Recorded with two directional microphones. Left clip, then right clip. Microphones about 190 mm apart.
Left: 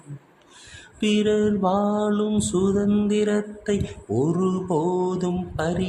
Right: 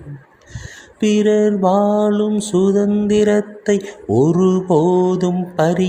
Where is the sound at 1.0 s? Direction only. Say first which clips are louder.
Right 7 dB; 15° right (ahead or behind).